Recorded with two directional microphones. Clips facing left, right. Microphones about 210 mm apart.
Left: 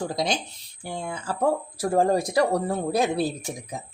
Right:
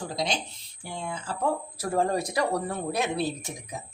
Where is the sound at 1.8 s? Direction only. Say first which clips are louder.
Left 5 dB; 30° left (ahead or behind).